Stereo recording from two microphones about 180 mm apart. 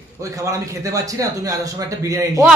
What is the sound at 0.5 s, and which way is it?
A man's voice, 20° right (ahead or behind).